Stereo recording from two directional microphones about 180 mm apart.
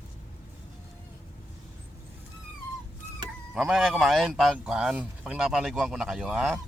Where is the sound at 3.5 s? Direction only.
Centre (ahead or behind).